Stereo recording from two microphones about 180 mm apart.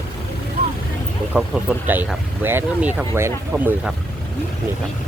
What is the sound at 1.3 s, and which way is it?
Speech, 5° right (ahead or behind).